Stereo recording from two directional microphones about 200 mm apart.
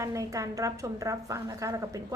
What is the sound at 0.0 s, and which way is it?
A woman's voice, 15° right (ahead or behind).